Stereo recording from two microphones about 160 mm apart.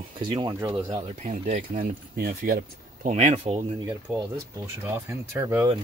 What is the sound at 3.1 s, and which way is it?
Speech, 45° right (ahead or behind).